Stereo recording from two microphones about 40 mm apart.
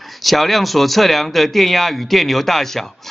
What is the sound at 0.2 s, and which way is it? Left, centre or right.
A man's voice, centre.